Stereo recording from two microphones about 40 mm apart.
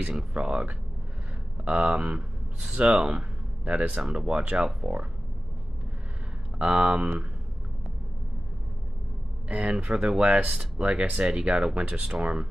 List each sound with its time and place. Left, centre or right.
0.0 s speech: right
2.1 s speech: centre
6.6 s speech: right
9.7 s speech: right